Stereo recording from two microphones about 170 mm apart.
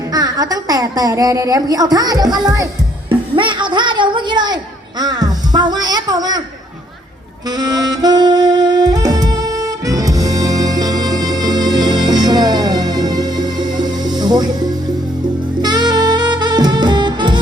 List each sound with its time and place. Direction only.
0.1 s speech: 20° right (ahead or behind)
7.5 s saxophone: 25° right (ahead or behind)